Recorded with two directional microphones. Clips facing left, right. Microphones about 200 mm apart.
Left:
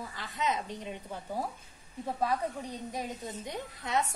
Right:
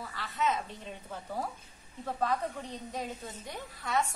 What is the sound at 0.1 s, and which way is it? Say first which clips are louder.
A woman's voice: right 2 dB; 15° left (ahead or behind).